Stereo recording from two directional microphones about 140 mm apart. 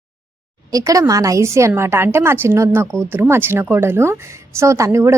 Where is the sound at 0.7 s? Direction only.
25° right (ahead or behind).